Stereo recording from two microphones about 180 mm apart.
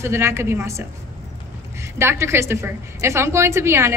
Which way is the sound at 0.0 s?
15° right (ahead or behind).